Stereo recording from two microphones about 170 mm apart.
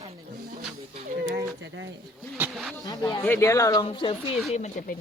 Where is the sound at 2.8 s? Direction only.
25° left (ahead or behind).